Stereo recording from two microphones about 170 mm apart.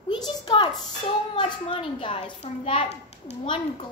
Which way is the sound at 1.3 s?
30° left (ahead or behind).